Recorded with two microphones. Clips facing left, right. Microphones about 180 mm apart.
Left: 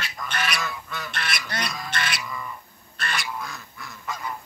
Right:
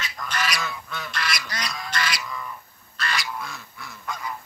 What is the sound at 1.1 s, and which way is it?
Goose, 55° left (ahead or behind).